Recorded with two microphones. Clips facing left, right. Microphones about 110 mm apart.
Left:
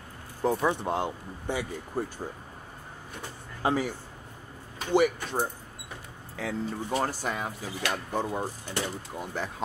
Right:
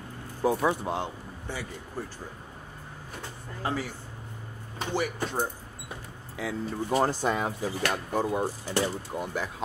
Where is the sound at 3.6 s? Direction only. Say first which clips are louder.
Left 4 dB; 15° left (ahead or behind).